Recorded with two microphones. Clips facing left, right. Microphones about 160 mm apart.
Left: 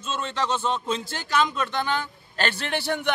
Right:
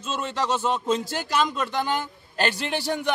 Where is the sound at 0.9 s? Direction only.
40° right (ahead or behind).